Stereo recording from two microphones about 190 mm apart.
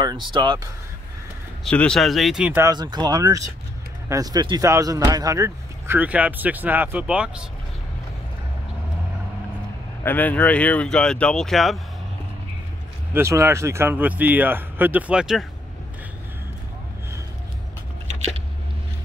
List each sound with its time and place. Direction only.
0.0 s speech: 25° right (ahead or behind)
1.6 s speech: 5° left (ahead or behind)
2.7 s speech: 20° right (ahead or behind); by 7.4 s 5° right (ahead or behind)
10.0 s speech: 10° left (ahead or behind)
13.1 s speech: 15° right (ahead or behind)